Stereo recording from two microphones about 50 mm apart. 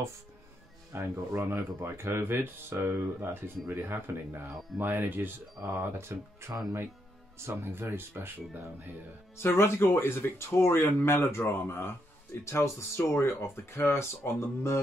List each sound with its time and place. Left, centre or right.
0.9 s speech: right
1.3 s speech: right
1.8 s speech: right
5.9 s speech: right
9.4 s speech: left
12.4 s speech: left